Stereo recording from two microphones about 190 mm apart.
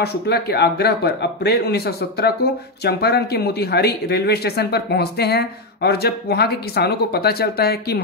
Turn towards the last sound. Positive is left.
turn(degrees=55)  # may be behind; listen again after turning